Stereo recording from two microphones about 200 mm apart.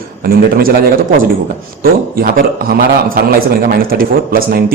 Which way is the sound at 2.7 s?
45° right (ahead or behind).